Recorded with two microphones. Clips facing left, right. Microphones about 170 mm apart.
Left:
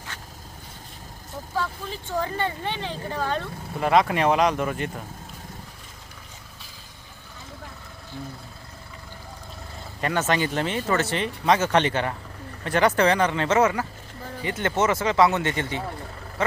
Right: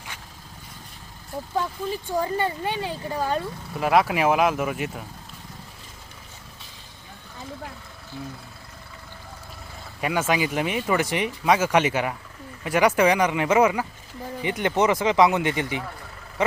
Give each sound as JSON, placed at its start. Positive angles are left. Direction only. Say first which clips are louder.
{"t": 0.1, "sound": "vehicle", "louder": "left 1 dB", "side_deg": -10}
{"t": 1.5, "sound": "speech", "louder": "right 3 dB", "side_deg": -15}
{"t": 10.0, "sound": "speech", "louder": "even", "side_deg": -10}